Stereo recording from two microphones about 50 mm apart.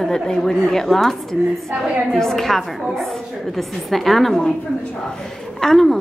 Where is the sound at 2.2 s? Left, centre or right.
Centre.